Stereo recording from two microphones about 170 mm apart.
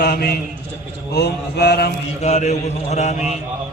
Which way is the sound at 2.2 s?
40° left (ahead or behind).